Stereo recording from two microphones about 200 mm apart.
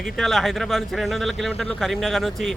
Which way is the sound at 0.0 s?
Centre (ahead or behind).